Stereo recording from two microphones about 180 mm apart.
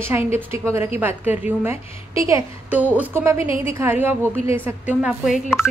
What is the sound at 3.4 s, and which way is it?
Speech, 30° left (ahead or behind).